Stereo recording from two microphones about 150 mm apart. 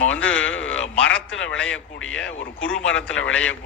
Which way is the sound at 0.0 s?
10° left (ahead or behind).